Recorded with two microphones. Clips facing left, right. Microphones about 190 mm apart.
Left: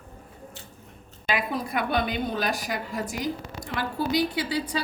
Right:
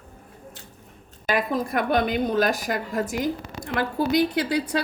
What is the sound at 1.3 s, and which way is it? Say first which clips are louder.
A woman's voice: right 4 dB; 45° right (ahead or behind).